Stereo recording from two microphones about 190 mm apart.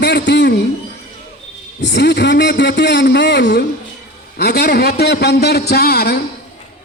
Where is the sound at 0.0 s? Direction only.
65° left (ahead or behind).